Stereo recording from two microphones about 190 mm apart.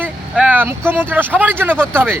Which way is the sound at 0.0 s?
10° right (ahead or behind).